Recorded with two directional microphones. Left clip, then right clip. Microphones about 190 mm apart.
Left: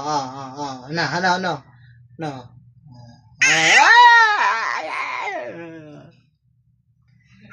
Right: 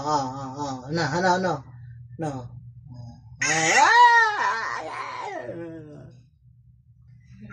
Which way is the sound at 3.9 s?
20° left (ahead or behind).